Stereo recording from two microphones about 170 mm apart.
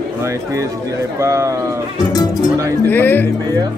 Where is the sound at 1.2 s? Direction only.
15° right (ahead or behind).